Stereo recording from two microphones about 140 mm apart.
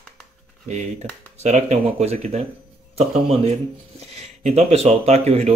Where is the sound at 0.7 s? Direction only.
55° right (ahead or behind).